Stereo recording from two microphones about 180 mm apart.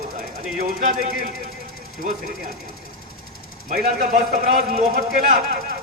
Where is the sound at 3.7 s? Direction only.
55° right (ahead or behind).